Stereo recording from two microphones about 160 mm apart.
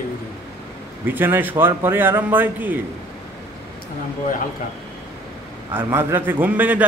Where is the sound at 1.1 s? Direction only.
10° right (ahead or behind).